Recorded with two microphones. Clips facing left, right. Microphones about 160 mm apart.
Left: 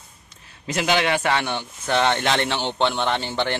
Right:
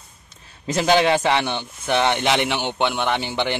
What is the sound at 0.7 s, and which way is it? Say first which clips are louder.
Speech: right 4 dB; 35° right (ahead or behind).